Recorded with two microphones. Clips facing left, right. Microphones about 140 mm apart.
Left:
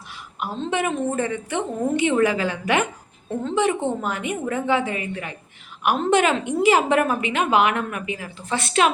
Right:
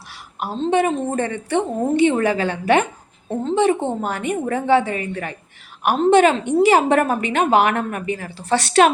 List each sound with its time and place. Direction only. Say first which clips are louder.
0.4 s a woman's voice: right 6 dB; 30° right (ahead or behind)